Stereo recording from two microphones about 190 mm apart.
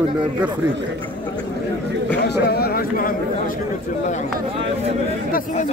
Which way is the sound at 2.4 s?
55° left (ahead or behind).